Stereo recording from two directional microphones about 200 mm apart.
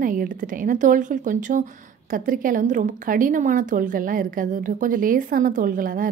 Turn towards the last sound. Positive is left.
turn(degrees=-45)  # may be behind; listen again after turning